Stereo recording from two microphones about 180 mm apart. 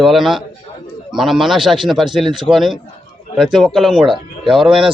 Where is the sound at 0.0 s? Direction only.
Centre (ahead or behind).